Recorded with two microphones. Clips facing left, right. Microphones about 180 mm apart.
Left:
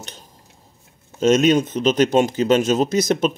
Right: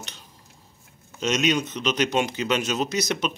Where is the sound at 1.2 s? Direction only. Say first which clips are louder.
Left 8 dB; 50° left (ahead or behind).